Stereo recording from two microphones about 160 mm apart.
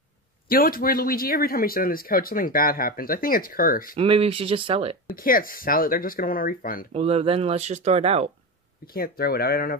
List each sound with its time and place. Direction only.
0.5 s speech: 65° left (ahead or behind)
3.9 s speech: 35° right (ahead or behind)
5.1 s speech: 60° left (ahead or behind)
6.9 s speech: 40° right (ahead or behind)
8.8 s speech: 70° left (ahead or behind)